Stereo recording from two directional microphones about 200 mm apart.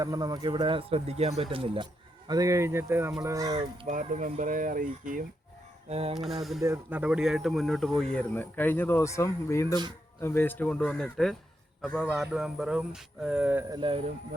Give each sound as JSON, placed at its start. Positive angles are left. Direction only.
{"t": 0.0, "sound": "speech", "side_deg": -20}
{"t": 3.8, "sound": "speech", "side_deg": -40}
{"t": 5.9, "sound": "speech", "side_deg": -30}
{"t": 6.1, "sound": "speech", "side_deg": 0}
{"t": 6.6, "sound": "a man's voice", "side_deg": -10}
{"t": 13.7, "sound": "speech", "side_deg": -25}